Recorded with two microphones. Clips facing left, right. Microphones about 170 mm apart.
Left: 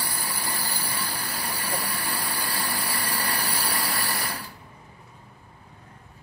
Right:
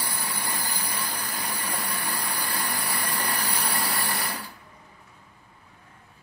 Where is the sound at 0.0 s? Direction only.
20° right (ahead or behind).